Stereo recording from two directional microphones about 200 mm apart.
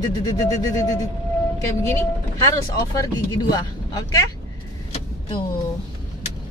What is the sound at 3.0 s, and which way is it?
Speech, 20° left (ahead or behind).